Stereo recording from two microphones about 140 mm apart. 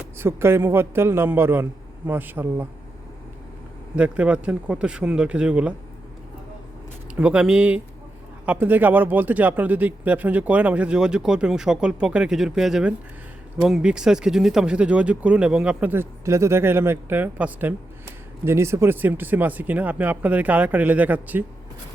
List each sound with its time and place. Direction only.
0.2 s speech: 15° right (ahead or behind)
3.9 s speech: 10° right (ahead or behind)
7.2 s speech: 5° right (ahead or behind)